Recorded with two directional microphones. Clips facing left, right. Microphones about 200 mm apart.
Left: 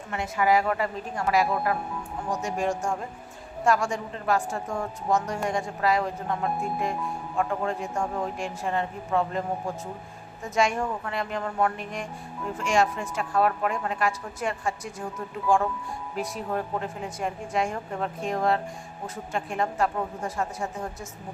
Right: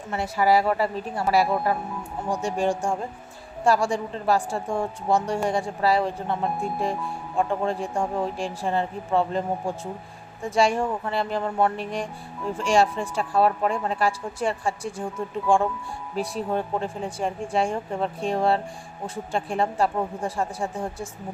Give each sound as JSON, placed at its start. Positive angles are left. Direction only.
{"t": 0.1, "sound": "speech", "side_deg": -35}
{"t": 7.3, "sound": "speech", "side_deg": -30}